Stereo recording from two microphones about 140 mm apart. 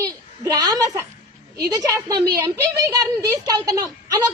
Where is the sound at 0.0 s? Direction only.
25° right (ahead or behind).